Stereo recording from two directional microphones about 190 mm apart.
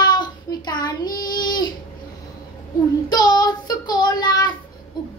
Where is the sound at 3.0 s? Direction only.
20° left (ahead or behind).